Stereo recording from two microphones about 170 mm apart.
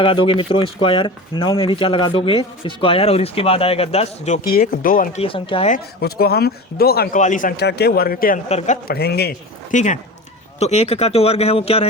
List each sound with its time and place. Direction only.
0.0 s speech: 30° left (ahead or behind)
4.7 s speech: 55° left (ahead or behind)
5.2 s speech: 30° left (ahead or behind)
5.7 s speech: 65° left (ahead or behind)
7.2 s speech: 50° left (ahead or behind)
7.5 s speech: 75° left (ahead or behind)
8.4 s speech: 40° left (ahead or behind)
8.9 s a man's voice: 70° left (ahead or behind)
9.7 s speech: 45° left (ahead or behind)